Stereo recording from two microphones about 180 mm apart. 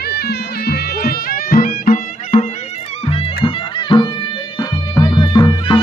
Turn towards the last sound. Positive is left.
turn(degrees=25)  # may be behind; listen again after turning